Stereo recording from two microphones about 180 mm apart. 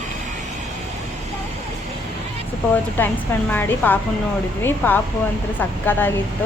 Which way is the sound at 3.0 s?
10° left (ahead or behind).